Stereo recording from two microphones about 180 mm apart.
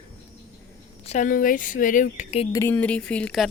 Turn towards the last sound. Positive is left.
turn(degrees=5)  # may be behind; listen again after turning